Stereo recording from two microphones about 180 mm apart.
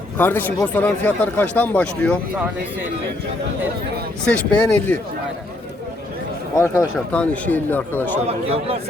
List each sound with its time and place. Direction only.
0.2 s speech: 10° left (ahead or behind)
4.3 s speech: 5° left (ahead or behind)
6.6 s speech: 10° left (ahead or behind)
8.3 s speech: 35° right (ahead or behind)